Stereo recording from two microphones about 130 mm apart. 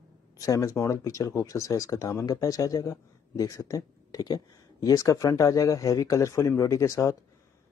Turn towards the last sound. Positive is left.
turn(degrees=25)  # may be behind; listen again after turning